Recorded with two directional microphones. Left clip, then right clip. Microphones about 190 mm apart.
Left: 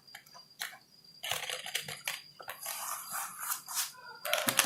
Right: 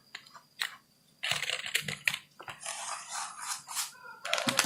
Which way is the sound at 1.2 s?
20° right (ahead or behind).